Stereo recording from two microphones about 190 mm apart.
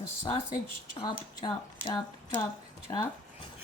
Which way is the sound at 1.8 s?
25° left (ahead or behind).